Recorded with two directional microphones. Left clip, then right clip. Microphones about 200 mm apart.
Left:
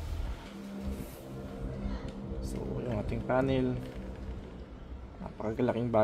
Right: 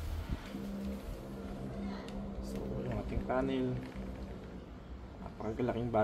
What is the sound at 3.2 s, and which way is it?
Speech, 55° left (ahead or behind).